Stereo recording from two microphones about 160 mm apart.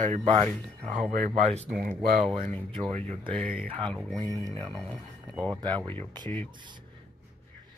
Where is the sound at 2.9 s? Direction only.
40° right (ahead or behind).